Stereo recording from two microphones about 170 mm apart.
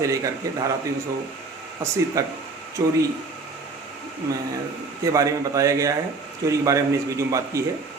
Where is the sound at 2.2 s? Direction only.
15° right (ahead or behind).